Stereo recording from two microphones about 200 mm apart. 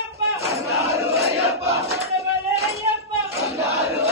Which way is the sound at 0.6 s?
15° right (ahead or behind).